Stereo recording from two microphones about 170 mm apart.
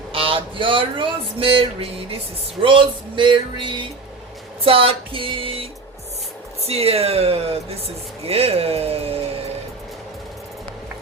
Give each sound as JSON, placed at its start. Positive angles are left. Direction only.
{"t": 0.1, "sound": "speech", "side_deg": -30}
{"t": 2.6, "sound": "music", "side_deg": -30}
{"t": 4.6, "sound": "speech", "side_deg": -30}
{"t": 6.7, "sound": "speech", "side_deg": -35}